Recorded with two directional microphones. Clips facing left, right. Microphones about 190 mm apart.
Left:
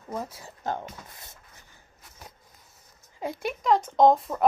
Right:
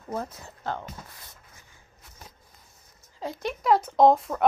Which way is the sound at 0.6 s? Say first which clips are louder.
Left 1 dB; 15° left (ahead or behind).